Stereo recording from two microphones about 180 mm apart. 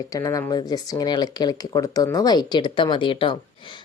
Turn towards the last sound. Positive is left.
turn(degrees=25)  # may be behind; listen again after turning